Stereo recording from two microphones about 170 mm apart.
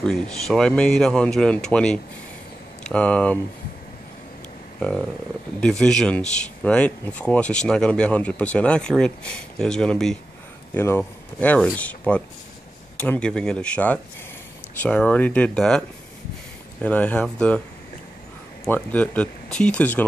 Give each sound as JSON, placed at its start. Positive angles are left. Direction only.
{"t": 0.0, "sound": "speech", "side_deg": 5}
{"t": 4.7, "sound": "speech", "side_deg": 5}
{"t": 16.8, "sound": "speech", "side_deg": 10}
{"t": 18.7, "sound": "speech", "side_deg": 10}